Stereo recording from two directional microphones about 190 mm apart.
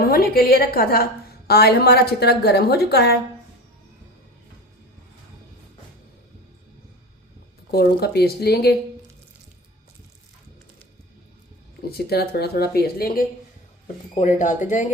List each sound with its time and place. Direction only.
0.0 s a woman's voice: 50° left (ahead or behind)
7.7 s a woman's voice: 55° left (ahead or behind)
11.9 s a woman's voice: 55° left (ahead or behind)
13.8 s speech: 40° left (ahead or behind)